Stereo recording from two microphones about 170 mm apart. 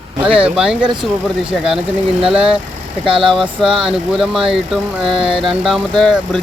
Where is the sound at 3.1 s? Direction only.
30° right (ahead or behind).